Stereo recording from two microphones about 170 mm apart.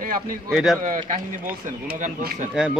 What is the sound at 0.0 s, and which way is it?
Speech, 55° right (ahead or behind).